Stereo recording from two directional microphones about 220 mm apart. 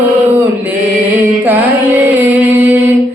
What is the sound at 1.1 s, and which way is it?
Carnatic music, 10° right (ahead or behind).